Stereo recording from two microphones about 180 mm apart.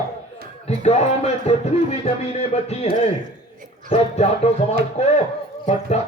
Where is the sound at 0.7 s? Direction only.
40° left (ahead or behind).